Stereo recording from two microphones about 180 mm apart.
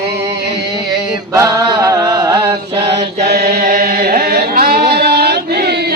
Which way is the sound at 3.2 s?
65° right (ahead or behind).